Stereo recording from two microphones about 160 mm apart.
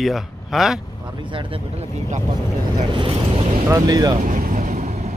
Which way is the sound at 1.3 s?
35° right (ahead or behind).